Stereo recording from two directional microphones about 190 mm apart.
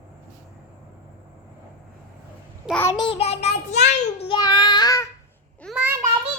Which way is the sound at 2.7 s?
10° left (ahead or behind).